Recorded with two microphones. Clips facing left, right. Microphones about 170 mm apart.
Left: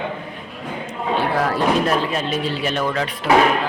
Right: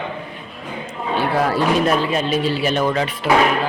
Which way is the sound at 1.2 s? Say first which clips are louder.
Right 2 dB; centre (ahead or behind).